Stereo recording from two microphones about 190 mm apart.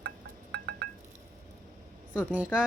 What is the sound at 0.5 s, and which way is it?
Music, 60° right (ahead or behind).